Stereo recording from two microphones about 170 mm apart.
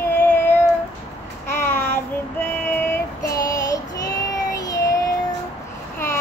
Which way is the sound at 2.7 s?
15° left (ahead or behind).